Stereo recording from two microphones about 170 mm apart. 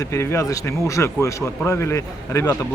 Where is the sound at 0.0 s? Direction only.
15° left (ahead or behind).